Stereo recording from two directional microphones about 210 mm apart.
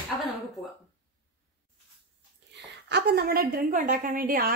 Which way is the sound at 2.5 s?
50° right (ahead or behind).